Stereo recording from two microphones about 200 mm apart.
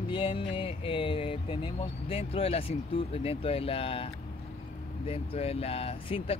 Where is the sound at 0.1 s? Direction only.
25° left (ahead or behind).